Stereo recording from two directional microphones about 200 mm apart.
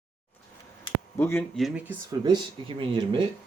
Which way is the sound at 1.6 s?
10° right (ahead or behind).